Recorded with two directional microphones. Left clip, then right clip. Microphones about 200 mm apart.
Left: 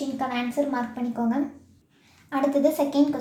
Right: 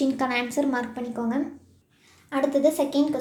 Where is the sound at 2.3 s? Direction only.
10° right (ahead or behind).